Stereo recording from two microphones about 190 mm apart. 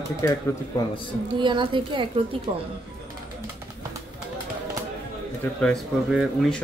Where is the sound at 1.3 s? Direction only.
25° right (ahead or behind).